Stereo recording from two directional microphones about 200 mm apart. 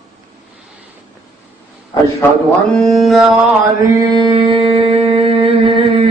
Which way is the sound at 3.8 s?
20° right (ahead or behind).